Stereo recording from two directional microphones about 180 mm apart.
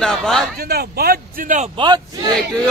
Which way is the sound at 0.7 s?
60° right (ahead or behind).